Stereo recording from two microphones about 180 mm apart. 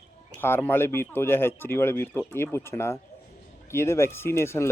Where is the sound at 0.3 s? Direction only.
10° left (ahead or behind).